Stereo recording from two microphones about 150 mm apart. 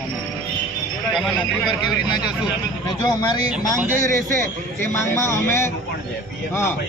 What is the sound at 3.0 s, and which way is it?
Speech, 25° left (ahead or behind).